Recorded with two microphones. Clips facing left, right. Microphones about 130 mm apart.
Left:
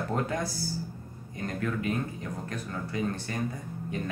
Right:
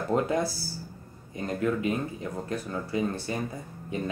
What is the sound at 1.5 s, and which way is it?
Speech, 20° right (ahead or behind).